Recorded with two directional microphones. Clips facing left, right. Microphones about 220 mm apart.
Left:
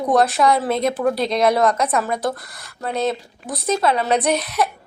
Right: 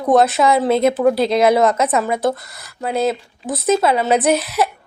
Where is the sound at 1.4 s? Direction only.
25° right (ahead or behind).